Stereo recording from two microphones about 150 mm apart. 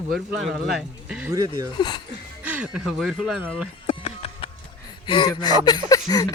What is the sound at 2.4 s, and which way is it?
Speech, 10° right (ahead or behind).